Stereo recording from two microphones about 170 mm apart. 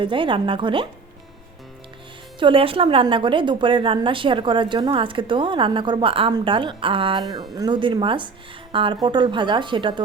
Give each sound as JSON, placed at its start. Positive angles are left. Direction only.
{"t": 0.0, "sound": "a woman's voice", "side_deg": -30}
{"t": 2.4, "sound": "a woman's voice", "side_deg": -30}